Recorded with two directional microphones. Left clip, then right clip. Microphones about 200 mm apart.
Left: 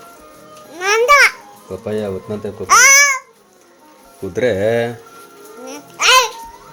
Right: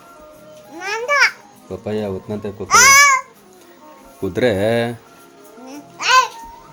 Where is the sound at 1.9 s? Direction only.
5° right (ahead or behind).